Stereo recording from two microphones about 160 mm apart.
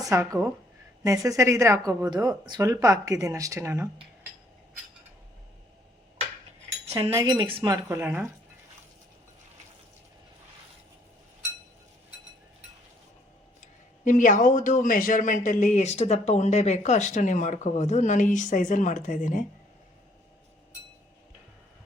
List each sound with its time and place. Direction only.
0.0 s speech: 20° right (ahead or behind)
6.8 s cutlery: 40° right (ahead or behind)
7.1 s speech: 25° right (ahead or behind); by 8.3 s 10° right (ahead or behind)
14.0 s speech: 55° left (ahead or behind)